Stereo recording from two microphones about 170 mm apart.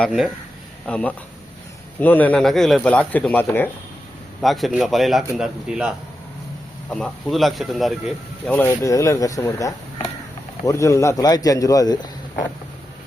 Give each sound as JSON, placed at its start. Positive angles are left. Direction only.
{"t": 0.9, "sound": "speech", "side_deg": 5}
{"t": 4.4, "sound": "speech", "side_deg": 0}
{"t": 6.9, "sound": "speech", "side_deg": 5}
{"t": 8.5, "sound": "a man's voice", "side_deg": 15}